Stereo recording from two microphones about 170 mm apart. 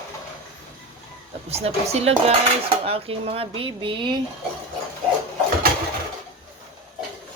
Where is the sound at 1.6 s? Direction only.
40° right (ahead or behind).